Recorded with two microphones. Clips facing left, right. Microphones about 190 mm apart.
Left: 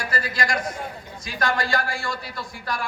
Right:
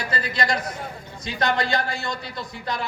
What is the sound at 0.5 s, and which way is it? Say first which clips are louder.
Speech: left 1 dB; 45° left (ahead or behind).